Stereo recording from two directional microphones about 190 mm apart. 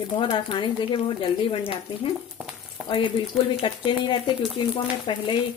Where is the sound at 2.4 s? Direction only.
Centre (ahead or behind).